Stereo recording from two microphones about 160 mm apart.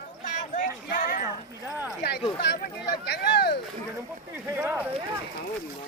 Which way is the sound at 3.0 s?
90° left.